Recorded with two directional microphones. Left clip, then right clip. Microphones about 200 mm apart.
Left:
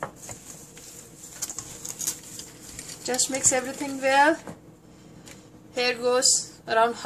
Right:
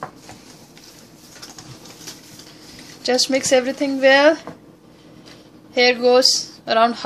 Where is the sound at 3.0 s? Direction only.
40° right (ahead or behind).